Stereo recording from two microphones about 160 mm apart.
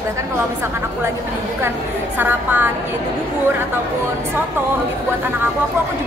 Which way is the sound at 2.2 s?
10° right (ahead or behind).